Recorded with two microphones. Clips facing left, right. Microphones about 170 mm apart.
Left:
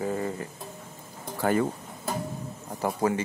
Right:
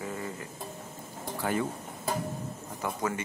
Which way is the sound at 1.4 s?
50° left (ahead or behind).